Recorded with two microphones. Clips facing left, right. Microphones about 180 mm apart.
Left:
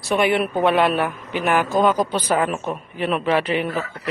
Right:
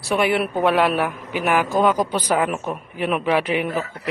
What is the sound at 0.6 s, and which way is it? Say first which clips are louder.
A woman's voice: even; 5° right (ahead or behind).